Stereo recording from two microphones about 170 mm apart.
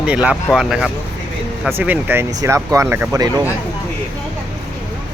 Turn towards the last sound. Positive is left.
turn(degrees=-20)  # may be behind; listen again after turning